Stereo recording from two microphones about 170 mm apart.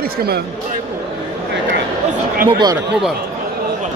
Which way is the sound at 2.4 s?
20° right (ahead or behind).